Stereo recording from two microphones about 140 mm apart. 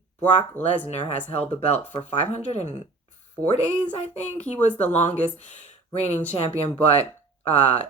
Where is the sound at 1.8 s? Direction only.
15° left (ahead or behind).